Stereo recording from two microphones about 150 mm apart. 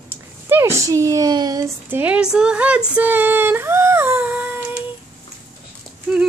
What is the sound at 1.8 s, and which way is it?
Speech, 10° right (ahead or behind).